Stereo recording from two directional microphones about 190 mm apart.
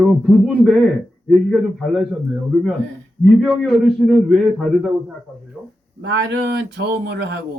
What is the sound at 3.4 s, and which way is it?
Speech, centre (ahead or behind).